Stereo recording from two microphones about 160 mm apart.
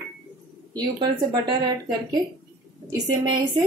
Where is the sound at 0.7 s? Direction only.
25° right (ahead or behind).